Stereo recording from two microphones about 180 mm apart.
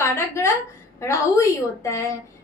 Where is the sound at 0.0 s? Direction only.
15° left (ahead or behind).